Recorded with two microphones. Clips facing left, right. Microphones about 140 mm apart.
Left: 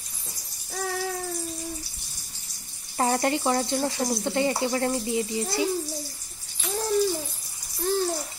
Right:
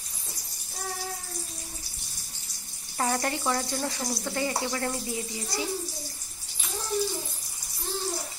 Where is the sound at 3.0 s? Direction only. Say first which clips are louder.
Left 4 dB; 30° left (ahead or behind).